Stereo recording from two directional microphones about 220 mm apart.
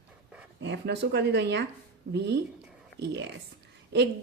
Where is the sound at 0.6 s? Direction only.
50° right (ahead or behind).